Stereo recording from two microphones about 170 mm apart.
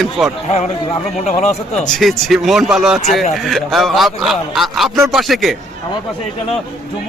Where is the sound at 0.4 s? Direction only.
40° left (ahead or behind).